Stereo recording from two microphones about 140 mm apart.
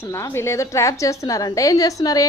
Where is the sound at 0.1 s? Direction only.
20° left (ahead or behind).